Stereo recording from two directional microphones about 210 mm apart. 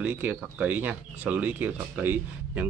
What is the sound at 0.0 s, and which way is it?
Speech, 10° right (ahead or behind).